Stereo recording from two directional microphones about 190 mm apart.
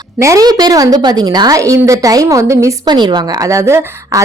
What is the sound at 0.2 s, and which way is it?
A woman's voice, 15° right (ahead or behind).